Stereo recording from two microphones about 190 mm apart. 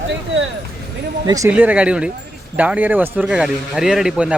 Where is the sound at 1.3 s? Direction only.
15° right (ahead or behind).